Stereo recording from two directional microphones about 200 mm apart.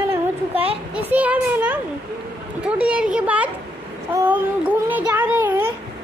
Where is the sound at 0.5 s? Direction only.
30° right (ahead or behind).